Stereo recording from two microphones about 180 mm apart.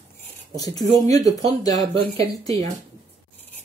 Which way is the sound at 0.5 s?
20° left (ahead or behind).